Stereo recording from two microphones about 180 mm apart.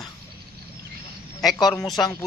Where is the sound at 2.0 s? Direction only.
20° left (ahead or behind).